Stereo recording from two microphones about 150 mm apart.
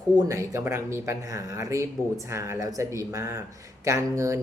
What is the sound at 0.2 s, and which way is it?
Speech, 20° right (ahead or behind).